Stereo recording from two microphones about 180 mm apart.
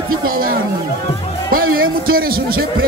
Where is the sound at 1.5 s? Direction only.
55° right (ahead or behind).